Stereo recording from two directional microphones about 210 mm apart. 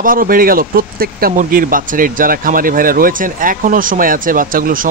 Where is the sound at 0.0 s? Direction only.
40° right (ahead or behind).